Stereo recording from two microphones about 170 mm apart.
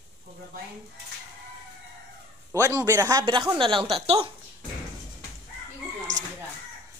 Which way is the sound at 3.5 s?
30° right (ahead or behind).